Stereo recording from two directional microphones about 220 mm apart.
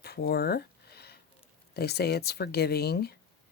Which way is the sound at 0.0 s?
45° left (ahead or behind).